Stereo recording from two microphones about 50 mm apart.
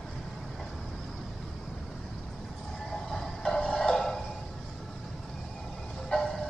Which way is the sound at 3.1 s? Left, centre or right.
Centre.